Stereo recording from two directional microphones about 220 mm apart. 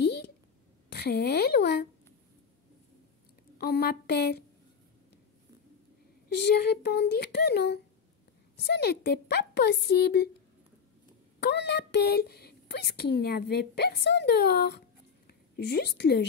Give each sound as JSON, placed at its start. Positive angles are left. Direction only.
{"t": 0.0, "sound": "a sound", "side_deg": 50}
{"t": 0.9, "sound": "a woman's voice", "side_deg": 45}
{"t": 3.5, "sound": "a woman's voice", "side_deg": 45}
{"t": 6.2, "sound": "a woman's voice", "side_deg": 45}
{"t": 11.3, "sound": "a woman's voice", "side_deg": 50}